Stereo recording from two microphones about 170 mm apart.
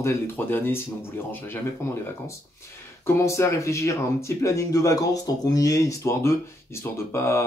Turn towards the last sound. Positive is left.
turn(degrees=15)  # may be behind; listen again after turning